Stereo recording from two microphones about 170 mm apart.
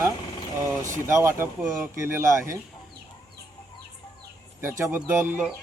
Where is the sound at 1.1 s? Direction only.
15° right (ahead or behind).